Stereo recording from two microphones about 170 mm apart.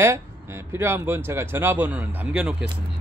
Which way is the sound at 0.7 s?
15° right (ahead or behind).